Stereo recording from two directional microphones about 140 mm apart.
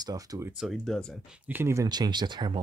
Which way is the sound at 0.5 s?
Centre (ahead or behind).